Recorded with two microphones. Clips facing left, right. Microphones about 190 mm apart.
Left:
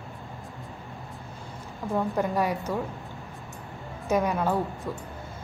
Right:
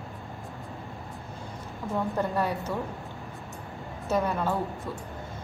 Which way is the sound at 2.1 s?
15° left (ahead or behind).